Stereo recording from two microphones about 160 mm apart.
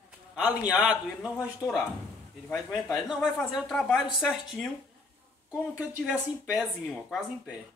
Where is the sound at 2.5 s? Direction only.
Centre (ahead or behind).